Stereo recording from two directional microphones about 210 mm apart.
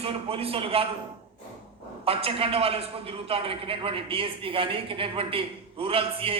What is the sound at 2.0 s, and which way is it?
A man's voice, 25° right (ahead or behind).